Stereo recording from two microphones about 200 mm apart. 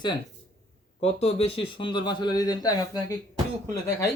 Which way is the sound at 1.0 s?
30° left (ahead or behind).